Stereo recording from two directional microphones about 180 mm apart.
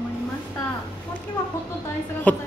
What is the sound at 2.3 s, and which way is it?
Speech, 10° left (ahead or behind).